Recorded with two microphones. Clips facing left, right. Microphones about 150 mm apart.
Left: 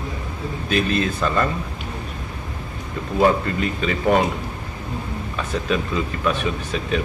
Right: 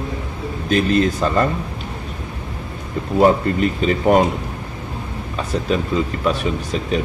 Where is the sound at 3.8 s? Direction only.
40° right (ahead or behind).